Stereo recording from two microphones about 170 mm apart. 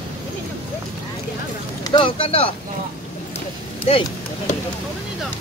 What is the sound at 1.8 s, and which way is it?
Speech, 30° left (ahead or behind).